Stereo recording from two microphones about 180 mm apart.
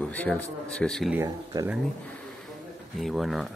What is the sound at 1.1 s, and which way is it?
Speech, 15° right (ahead or behind).